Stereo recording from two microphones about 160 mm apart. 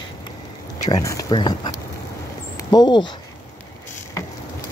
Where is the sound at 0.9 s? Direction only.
20° left (ahead or behind).